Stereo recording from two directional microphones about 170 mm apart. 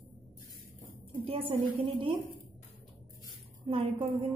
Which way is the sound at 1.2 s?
35° right (ahead or behind).